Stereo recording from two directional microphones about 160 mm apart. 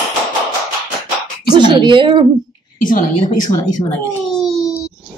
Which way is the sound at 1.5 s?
30° right (ahead or behind).